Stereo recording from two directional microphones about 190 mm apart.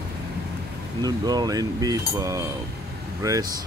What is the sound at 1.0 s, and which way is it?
Speech, 20° right (ahead or behind).